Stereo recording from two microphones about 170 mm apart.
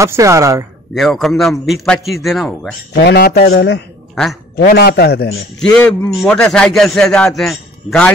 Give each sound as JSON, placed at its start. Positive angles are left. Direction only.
{"t": 0.0, "sound": "speech", "side_deg": -15}
{"t": 0.9, "sound": "a man's voice", "side_deg": 0}
{"t": 2.9, "sound": "speech", "side_deg": 70}
{"t": 4.1, "sound": "speech", "side_deg": 0}
{"t": 4.6, "sound": "speech", "side_deg": 70}
{"t": 5.6, "sound": "a man's voice", "side_deg": 5}